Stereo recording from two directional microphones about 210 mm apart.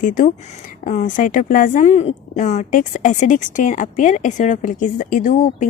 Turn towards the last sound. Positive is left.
turn(degrees=40)  # may be behind; listen again after turning